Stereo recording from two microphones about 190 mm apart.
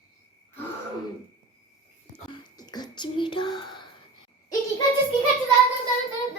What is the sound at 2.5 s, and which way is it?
Speech, 20° left (ahead or behind).